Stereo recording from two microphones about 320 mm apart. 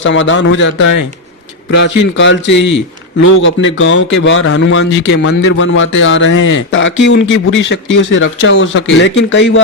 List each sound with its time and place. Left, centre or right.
0.0 s a man's voice: left